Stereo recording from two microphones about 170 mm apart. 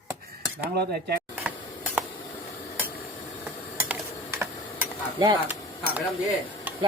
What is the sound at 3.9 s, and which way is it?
Typing, 15° right (ahead or behind).